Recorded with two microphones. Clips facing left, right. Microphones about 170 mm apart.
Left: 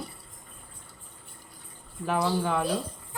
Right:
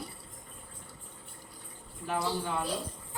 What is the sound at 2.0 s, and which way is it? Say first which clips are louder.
Speech: left 6 dB; 90° left.